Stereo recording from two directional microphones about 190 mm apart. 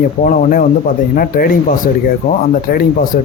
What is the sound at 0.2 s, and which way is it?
Speech, 45° left (ahead or behind).